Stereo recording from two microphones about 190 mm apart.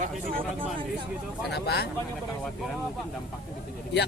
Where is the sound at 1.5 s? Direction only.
60° left (ahead or behind).